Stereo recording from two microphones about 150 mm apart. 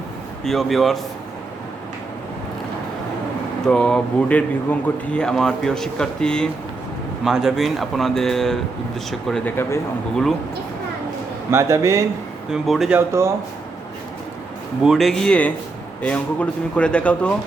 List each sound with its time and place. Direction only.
0.4 s speech: centre (ahead or behind)
3.7 s speech: 5° left (ahead or behind)
9.6 s speech: 20° left (ahead or behind)
11.5 s speech: 20° right (ahead or behind)
12.5 s speech: centre (ahead or behind)
14.8 s speech: centre (ahead or behind)